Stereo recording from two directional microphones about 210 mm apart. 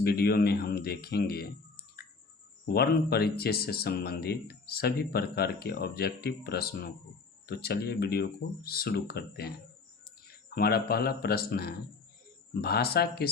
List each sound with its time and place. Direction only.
0.0 s speech: 50° left (ahead or behind)
10.5 s speech: 45° left (ahead or behind)